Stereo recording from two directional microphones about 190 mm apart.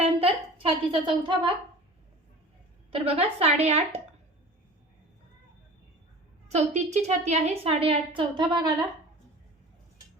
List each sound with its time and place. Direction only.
0.0 s a woman's voice: 30° right (ahead or behind)
2.9 s a woman's voice: 30° right (ahead or behind)
6.5 s a woman's voice: 35° right (ahead or behind)